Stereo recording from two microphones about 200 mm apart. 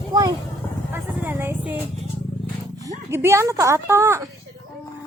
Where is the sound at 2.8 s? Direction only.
15° right (ahead or behind).